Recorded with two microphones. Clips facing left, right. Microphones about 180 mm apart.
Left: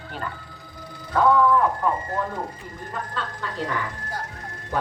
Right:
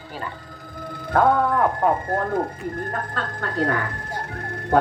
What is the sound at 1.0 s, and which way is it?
Speech, 55° right (ahead or behind).